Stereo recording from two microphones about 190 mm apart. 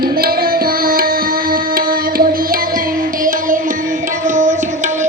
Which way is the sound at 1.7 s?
50° right (ahead or behind).